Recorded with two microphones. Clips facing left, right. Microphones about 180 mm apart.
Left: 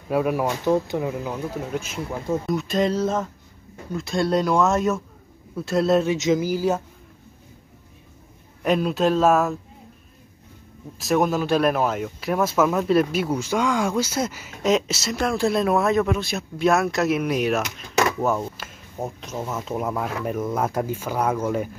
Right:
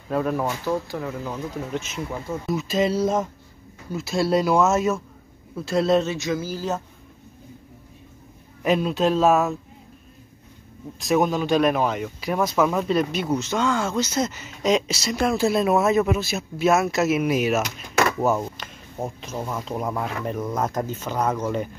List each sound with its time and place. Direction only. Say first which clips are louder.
0.1 s speech: left 2 dB; 10° left (ahead or behind)
6.0 s speech: left 5 dB; 20° left (ahead or behind)
8.6 s speech: even; centre (ahead or behind)
11.0 s speech: even; centre (ahead or behind)